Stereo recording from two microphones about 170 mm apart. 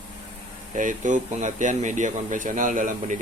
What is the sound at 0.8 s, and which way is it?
Speech, 50° right (ahead or behind).